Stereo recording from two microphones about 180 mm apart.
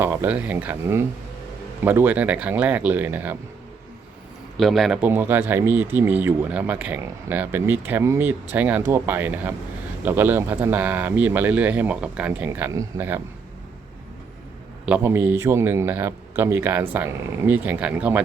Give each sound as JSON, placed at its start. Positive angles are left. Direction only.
{"t": 0.0, "sound": "speech", "side_deg": -10}
{"t": 4.5, "sound": "speech", "side_deg": 0}
{"t": 14.8, "sound": "speech", "side_deg": -10}